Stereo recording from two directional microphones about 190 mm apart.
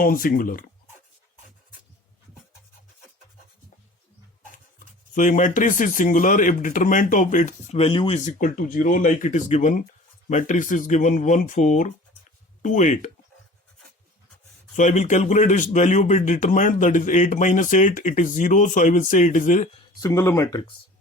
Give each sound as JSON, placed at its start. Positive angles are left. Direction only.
{"t": 0.0, "sound": "speech", "side_deg": 50}
{"t": 5.1, "sound": "speech", "side_deg": 40}
{"t": 14.8, "sound": "speech", "side_deg": 40}
{"t": 20.0, "sound": "speech", "side_deg": 15}